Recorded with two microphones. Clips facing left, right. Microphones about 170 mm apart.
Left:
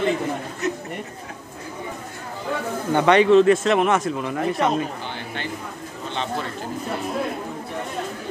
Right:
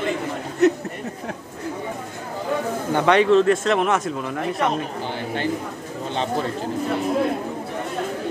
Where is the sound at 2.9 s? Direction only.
Centre (ahead or behind).